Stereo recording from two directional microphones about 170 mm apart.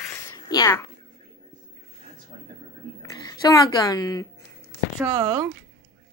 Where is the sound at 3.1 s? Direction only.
25° left (ahead or behind).